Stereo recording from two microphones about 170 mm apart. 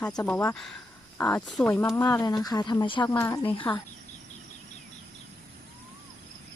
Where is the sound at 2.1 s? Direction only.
25° left (ahead or behind).